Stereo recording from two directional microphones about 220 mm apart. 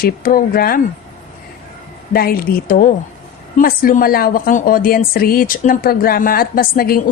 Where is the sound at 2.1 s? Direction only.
45° left (ahead or behind).